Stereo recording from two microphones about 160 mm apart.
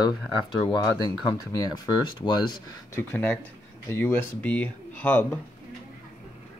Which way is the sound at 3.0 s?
10° left (ahead or behind).